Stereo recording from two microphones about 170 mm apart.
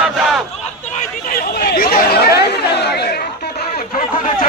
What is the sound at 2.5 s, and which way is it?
Speech, 75° left (ahead or behind).